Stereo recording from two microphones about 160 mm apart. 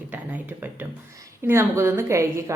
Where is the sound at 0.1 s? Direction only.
10° right (ahead or behind).